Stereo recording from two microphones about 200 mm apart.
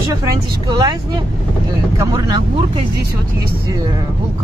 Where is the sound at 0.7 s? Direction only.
20° right (ahead or behind).